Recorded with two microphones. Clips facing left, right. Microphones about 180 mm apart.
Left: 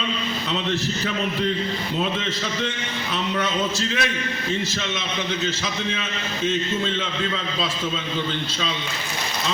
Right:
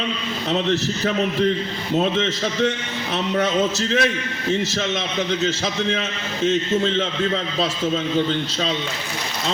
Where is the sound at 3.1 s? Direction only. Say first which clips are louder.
Right 4 dB; 45° right (ahead or behind).